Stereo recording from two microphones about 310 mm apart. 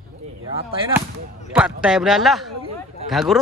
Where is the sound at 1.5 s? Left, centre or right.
Centre.